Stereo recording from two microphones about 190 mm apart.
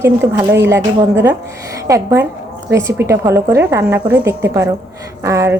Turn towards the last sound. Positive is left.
turn(degrees=-15)  # may be behind; listen again after turning